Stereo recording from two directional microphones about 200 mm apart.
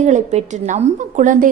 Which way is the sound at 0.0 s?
35° right (ahead or behind).